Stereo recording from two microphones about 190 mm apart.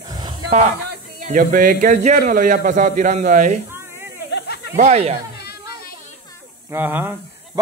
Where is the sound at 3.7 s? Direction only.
10° right (ahead or behind).